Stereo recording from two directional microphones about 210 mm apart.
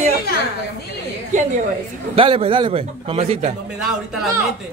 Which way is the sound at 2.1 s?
25° right (ahead or behind).